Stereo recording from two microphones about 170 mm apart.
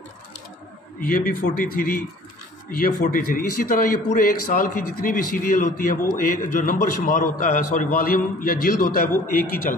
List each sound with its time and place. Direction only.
1.0 s a man's voice: 55° left (ahead or behind)